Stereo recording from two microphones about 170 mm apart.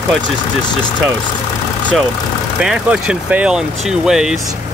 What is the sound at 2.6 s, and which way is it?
Speech, 5° right (ahead or behind).